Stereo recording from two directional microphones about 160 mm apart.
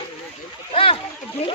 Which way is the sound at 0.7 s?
35° left (ahead or behind).